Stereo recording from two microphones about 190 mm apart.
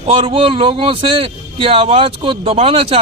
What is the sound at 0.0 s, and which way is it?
A man's voice, 30° right (ahead or behind).